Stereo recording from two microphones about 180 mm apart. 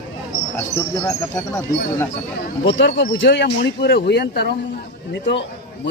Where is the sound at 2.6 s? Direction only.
75° left (ahead or behind).